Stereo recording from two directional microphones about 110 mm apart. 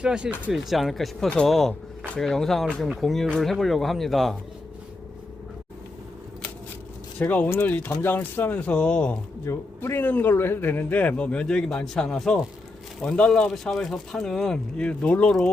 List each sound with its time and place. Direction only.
0.0 s speech: 10° right (ahead or behind)
7.2 s a man's voice: 15° left (ahead or behind)